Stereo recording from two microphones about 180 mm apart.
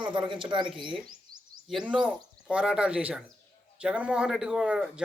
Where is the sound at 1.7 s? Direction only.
5° right (ahead or behind).